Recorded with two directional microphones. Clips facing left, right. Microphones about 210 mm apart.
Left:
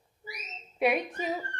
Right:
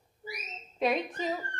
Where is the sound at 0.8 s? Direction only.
10° left (ahead or behind).